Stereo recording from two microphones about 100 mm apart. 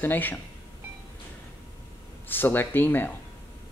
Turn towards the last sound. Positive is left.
turn(degrees=20)  # may be behind; listen again after turning